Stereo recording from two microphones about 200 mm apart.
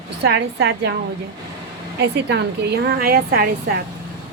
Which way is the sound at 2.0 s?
55° right (ahead or behind).